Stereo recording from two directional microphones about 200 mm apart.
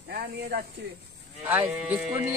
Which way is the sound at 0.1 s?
50° right (ahead or behind).